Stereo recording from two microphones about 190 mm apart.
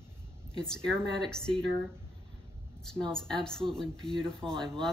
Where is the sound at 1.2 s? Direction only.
5° left (ahead or behind).